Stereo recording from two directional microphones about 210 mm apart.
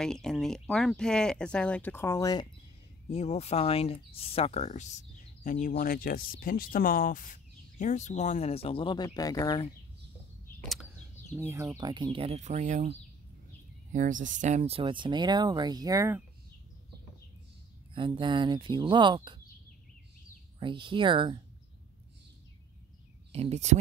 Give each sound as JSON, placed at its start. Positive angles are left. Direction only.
{"t": 0.0, "sound": "speech", "side_deg": 0}
{"t": 3.1, "sound": "speech", "side_deg": 30}
{"t": 10.6, "sound": "a sound", "side_deg": 0}
{"t": 11.3, "sound": "speech", "side_deg": -10}
{"t": 13.9, "sound": "speech", "side_deg": -40}
{"t": 17.9, "sound": "speech", "side_deg": -25}
{"t": 20.5, "sound": "speech", "side_deg": -25}
{"t": 23.3, "sound": "speech", "side_deg": -30}